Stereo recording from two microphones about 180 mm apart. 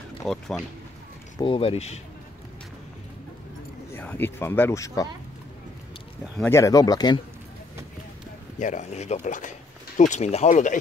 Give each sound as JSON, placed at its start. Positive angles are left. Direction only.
{"t": 0.2, "sound": "speech", "side_deg": 0}
{"t": 1.4, "sound": "speech", "side_deg": 30}
{"t": 3.9, "sound": "speech", "side_deg": 10}
{"t": 6.3, "sound": "speech", "side_deg": 15}
{"t": 8.5, "sound": "speech", "side_deg": 40}